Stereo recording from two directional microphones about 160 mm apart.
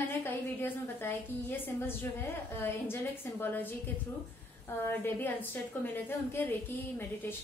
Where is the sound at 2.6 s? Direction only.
15° left (ahead or behind).